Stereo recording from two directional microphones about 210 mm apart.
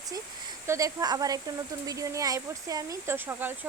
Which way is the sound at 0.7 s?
15° right (ahead or behind).